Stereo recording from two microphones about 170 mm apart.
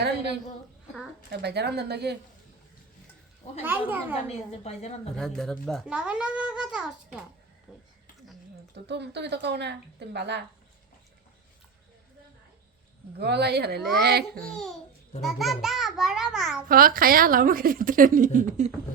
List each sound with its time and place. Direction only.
1.3 s a child's voice: 75° right (ahead or behind)
3.6 s a child's voice: 10° right (ahead or behind)
4.6 s a woman's voice: 40° left (ahead or behind)
5.1 s a child's voice: 5° left (ahead or behind)
8.7 s speech: 85° right
13.1 s a child's voice: 75° right (ahead or behind)
14.5 s a child's voice: centre (ahead or behind)
16.6 s a woman's voice: 55° right (ahead or behind)